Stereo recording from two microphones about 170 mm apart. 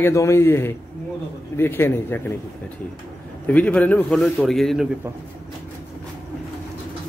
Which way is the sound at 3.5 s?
10° left (ahead or behind).